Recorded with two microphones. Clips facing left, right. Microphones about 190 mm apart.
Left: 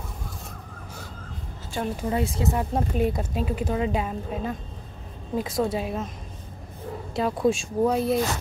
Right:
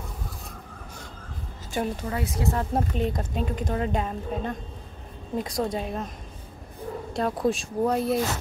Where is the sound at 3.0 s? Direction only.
10° left (ahead or behind).